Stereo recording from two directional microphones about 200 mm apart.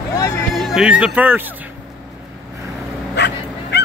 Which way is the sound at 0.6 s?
Centre (ahead or behind).